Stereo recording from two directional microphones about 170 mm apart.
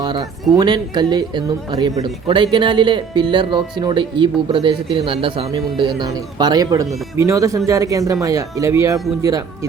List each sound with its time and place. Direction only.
0.0 s a man's voice: 25° right (ahead or behind)